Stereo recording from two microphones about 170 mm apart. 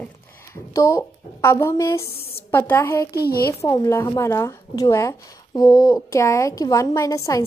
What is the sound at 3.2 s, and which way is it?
Speech, 65° left (ahead or behind).